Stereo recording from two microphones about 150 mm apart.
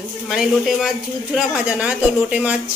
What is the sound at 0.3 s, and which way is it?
Speech, centre (ahead or behind).